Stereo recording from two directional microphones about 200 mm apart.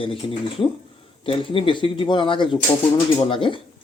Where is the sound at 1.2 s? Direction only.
25° left (ahead or behind).